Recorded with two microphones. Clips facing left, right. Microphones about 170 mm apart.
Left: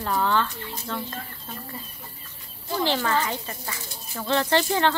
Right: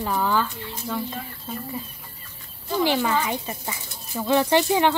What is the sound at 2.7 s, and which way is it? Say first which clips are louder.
Speech: right 2 dB; 10° right (ahead or behind).